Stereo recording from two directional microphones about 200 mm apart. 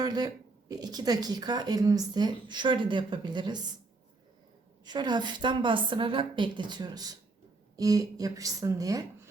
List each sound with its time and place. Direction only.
0.0 s speech: 20° right (ahead or behind)
4.9 s speech: 20° right (ahead or behind)